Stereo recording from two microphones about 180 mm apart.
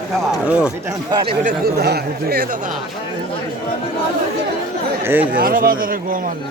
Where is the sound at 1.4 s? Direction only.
60° right (ahead or behind).